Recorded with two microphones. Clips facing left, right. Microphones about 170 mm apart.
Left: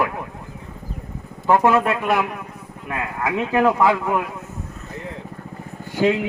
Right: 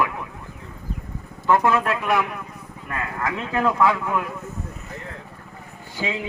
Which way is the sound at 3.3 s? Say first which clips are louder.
Left 5 dB; 15° left (ahead or behind).